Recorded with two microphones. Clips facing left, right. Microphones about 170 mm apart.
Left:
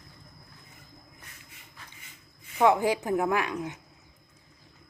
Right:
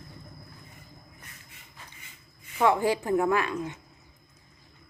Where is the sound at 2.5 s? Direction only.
15° left (ahead or behind).